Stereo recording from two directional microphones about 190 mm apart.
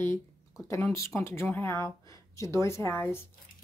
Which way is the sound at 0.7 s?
15° left (ahead or behind).